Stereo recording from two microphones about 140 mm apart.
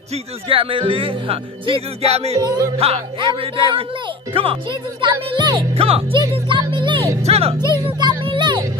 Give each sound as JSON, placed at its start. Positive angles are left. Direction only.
{"t": 0.1, "sound": "speech", "side_deg": -40}
{"t": 2.3, "sound": "music", "side_deg": -25}
{"t": 2.8, "sound": "speech", "side_deg": -45}
{"t": 7.2, "sound": "speech", "side_deg": -45}
{"t": 7.8, "sound": "a child's voice", "side_deg": -35}